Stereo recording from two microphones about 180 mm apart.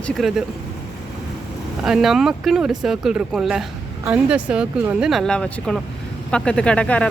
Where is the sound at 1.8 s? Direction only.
Centre (ahead or behind).